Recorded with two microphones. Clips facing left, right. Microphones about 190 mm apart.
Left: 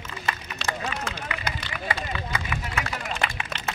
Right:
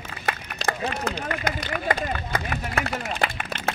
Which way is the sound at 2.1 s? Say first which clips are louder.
Right 3 dB; 50° right (ahead or behind).